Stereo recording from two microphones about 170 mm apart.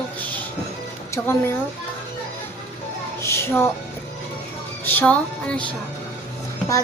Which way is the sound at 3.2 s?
15° left (ahead or behind).